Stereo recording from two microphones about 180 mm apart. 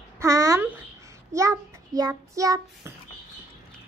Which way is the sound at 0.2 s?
15° right (ahead or behind).